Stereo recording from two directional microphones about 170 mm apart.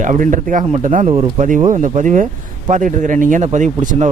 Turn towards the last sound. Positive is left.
turn(degrees=-45)  # may be behind; listen again after turning